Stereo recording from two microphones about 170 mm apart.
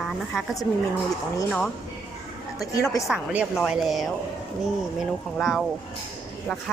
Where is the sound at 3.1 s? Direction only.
5° right (ahead or behind).